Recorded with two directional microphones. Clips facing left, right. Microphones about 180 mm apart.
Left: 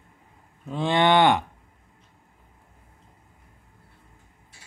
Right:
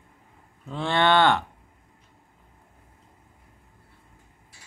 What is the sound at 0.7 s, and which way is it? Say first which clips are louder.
Cattle: left 2 dB; 15° left (ahead or behind).